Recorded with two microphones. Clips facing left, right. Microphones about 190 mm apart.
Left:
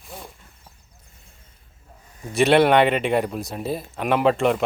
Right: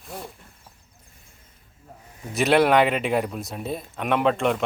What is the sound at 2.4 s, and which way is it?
Speech, centre (ahead or behind).